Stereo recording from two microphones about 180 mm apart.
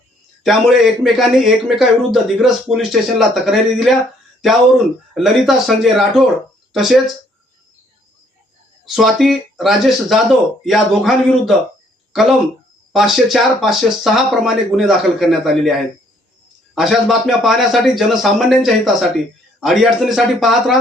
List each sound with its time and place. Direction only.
0.4 s a man's voice: centre (ahead or behind)
5.1 s a man's voice: centre (ahead or behind)
9.0 s a man's voice: centre (ahead or behind)